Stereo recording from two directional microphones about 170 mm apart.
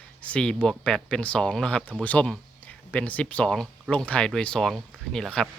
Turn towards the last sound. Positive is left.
turn(degrees=5)  # may be behind; listen again after turning